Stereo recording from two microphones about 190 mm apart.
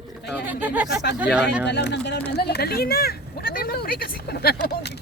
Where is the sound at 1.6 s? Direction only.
65° left (ahead or behind).